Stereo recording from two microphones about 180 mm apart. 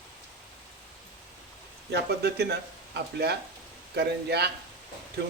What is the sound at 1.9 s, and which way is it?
Speech, 70° right (ahead or behind).